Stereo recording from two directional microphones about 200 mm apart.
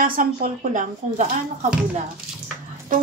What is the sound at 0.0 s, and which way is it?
Speech, 45° right (ahead or behind).